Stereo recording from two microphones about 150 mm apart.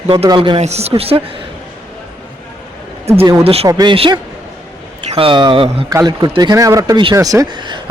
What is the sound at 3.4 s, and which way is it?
Speech, 40° right (ahead or behind).